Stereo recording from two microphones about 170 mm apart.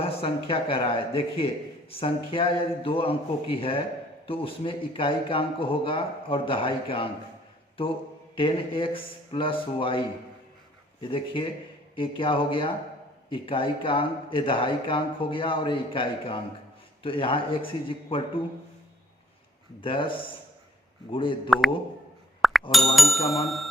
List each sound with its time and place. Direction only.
0.0 s speech: 35° left (ahead or behind)
8.4 s speech: 30° left (ahead or behind)
11.0 s speech: 30° left (ahead or behind)
19.8 s speech: 30° left (ahead or behind)
22.4 s plop: centre (ahead or behind)
22.7 s speech: centre (ahead or behind)